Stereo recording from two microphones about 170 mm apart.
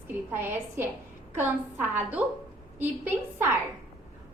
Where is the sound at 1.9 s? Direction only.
10° right (ahead or behind).